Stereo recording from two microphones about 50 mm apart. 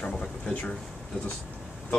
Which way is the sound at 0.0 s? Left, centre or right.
Left.